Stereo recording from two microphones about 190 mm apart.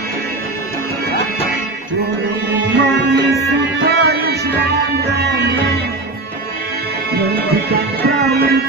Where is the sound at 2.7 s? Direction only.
65° right (ahead or behind).